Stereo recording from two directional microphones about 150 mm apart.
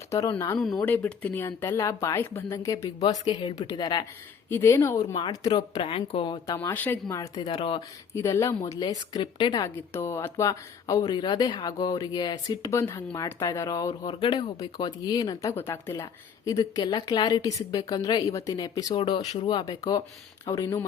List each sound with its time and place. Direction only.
0.1 s a woman's voice: 20° left (ahead or behind)
4.4 s speech: 15° left (ahead or behind)
5.1 s speech: 30° left (ahead or behind)
6.6 s speech: 15° left (ahead or behind)
7.4 s speech: 35° left (ahead or behind)
7.8 s a woman's voice: 20° left (ahead or behind)
9.6 s a woman's voice: 15° left (ahead or behind)
18.9 s a woman's voice: 35° left (ahead or behind)